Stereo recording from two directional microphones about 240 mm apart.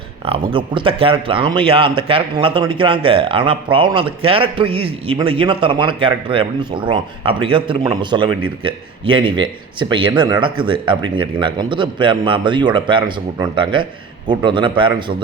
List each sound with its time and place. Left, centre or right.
0.5 s a man's voice: right